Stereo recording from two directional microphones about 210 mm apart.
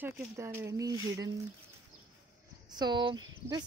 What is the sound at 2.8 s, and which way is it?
Speech, 20° right (ahead or behind).